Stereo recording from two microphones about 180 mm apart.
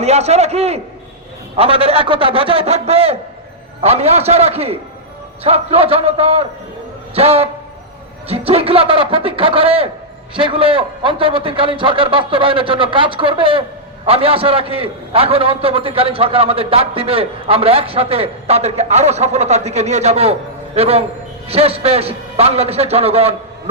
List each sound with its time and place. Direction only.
0.0 s a man's voice: 35° right (ahead or behind)